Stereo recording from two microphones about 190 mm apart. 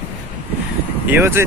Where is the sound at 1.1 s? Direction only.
15° right (ahead or behind).